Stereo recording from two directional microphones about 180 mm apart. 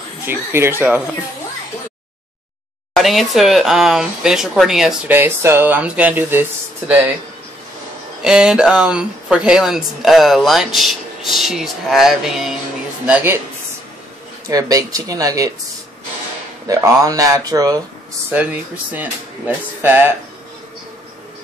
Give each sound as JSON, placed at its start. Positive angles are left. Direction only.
{"t": 0.3, "sound": "speech", "side_deg": -15}
{"t": 3.0, "sound": "speech", "side_deg": 0}
{"t": 8.2, "sound": "speech", "side_deg": -5}
{"t": 14.5, "sound": "speech", "side_deg": -20}
{"t": 16.6, "sound": "speech", "side_deg": -20}
{"t": 18.3, "sound": "speech", "side_deg": -10}